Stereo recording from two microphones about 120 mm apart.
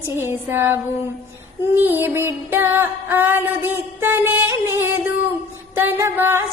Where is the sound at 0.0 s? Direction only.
20° right (ahead or behind).